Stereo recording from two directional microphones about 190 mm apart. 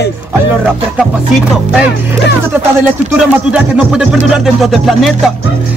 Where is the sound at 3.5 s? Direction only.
5° right (ahead or behind).